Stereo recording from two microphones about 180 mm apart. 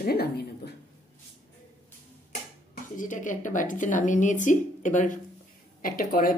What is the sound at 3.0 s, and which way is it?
A woman's voice, 45° left (ahead or behind).